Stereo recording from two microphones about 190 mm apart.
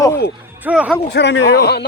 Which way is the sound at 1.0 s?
65° left (ahead or behind).